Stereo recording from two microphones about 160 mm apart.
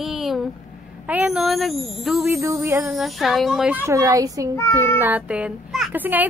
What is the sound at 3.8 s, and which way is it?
Speech, 20° right (ahead or behind).